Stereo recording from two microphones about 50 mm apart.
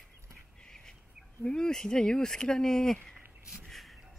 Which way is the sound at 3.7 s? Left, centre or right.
Centre.